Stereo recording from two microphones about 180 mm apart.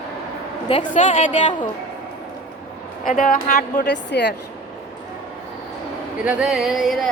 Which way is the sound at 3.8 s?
75° left (ahead or behind).